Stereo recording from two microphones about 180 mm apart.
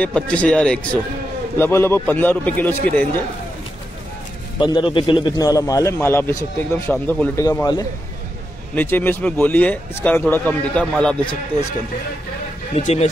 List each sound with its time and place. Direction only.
0.0 s speech: 5° left (ahead or behind)
4.6 s a man's voice: 25° left (ahead or behind); by 11.3 s 5° left (ahead or behind)
12.7 s speech: 35° left (ahead or behind)